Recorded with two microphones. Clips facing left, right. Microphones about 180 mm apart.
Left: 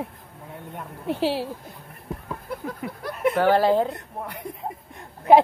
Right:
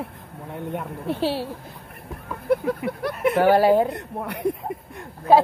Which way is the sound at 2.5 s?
65° right (ahead or behind).